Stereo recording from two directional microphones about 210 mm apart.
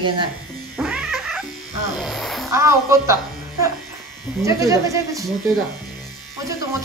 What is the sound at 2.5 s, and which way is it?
Speech, 15° right (ahead or behind).